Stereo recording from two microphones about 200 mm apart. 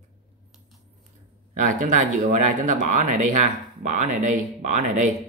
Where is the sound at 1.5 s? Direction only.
40° right (ahead or behind).